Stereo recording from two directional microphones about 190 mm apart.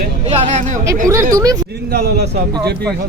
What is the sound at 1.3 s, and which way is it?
Speech, 20° right (ahead or behind).